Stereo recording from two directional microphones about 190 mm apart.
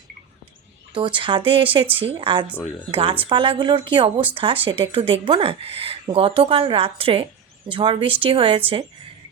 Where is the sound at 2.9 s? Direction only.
30° right (ahead or behind).